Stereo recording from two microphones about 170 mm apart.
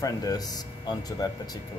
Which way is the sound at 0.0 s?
20° left (ahead or behind).